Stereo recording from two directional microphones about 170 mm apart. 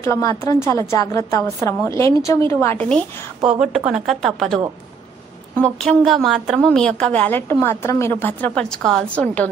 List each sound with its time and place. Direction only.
0.0 s a woman's voice: 20° left (ahead or behind)
3.4 s a woman's voice: 5° right (ahead or behind)
5.6 s a woman's voice: 5° left (ahead or behind)